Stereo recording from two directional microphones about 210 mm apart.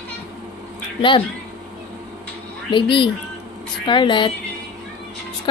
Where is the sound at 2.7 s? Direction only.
25° left (ahead or behind).